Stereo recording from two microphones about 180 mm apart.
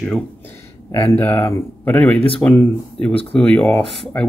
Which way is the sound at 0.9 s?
15° left (ahead or behind).